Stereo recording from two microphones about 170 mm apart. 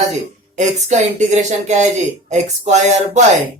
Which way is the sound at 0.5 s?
45° right (ahead or behind).